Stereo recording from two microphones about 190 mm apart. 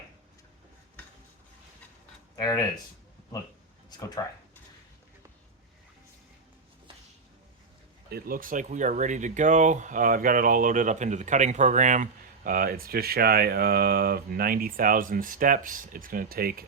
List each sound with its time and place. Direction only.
2.4 s speech: 15° left (ahead or behind)
3.8 s a sound: 20° left (ahead or behind)
8.1 s speech: 50° right (ahead or behind)
12.5 s speech: 50° right (ahead or behind)